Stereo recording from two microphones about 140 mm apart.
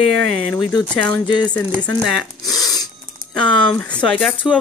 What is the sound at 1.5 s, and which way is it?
Speech, 10° left (ahead or behind).